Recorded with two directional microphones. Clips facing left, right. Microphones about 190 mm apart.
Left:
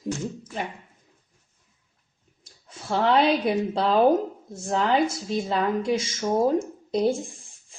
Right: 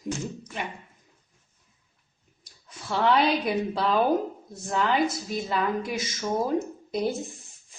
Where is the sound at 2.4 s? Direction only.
25° left (ahead or behind).